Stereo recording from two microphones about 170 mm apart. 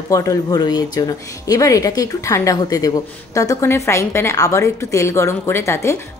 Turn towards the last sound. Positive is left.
turn(degrees=15)  # may be behind; listen again after turning